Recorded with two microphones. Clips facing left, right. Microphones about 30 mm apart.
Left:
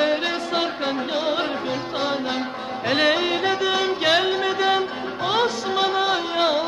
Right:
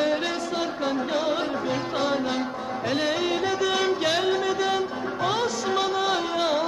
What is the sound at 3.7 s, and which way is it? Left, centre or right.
Music, left.